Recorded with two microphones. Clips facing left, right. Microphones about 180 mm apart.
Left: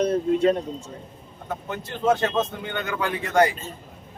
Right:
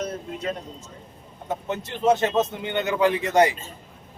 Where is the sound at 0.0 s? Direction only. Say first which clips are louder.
Left 10 dB; 30° left (ahead or behind).